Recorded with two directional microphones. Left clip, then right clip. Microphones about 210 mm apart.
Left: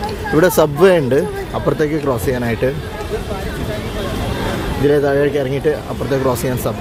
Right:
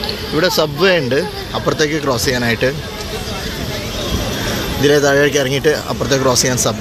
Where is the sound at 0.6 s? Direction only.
25° left (ahead or behind).